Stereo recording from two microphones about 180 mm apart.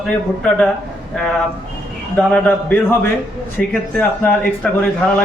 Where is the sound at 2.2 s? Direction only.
5° left (ahead or behind).